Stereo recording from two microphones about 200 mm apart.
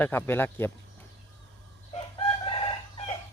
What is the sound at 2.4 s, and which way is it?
Chicken, 25° left (ahead or behind).